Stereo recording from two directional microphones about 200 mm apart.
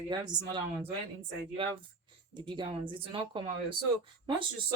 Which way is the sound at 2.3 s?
25° right (ahead or behind).